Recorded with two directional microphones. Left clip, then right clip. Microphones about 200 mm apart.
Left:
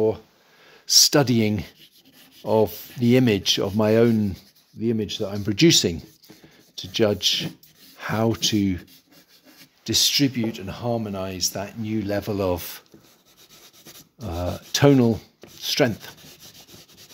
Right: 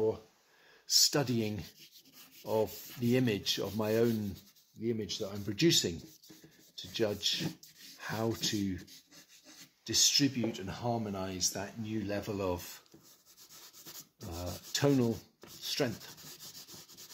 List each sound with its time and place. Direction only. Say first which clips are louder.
0.8 s speech: left 12 dB; 45° left (ahead or behind)
9.8 s speech: left 8 dB; 50° left (ahead or behind)
14.2 s speech: left 14 dB; 50° left (ahead or behind)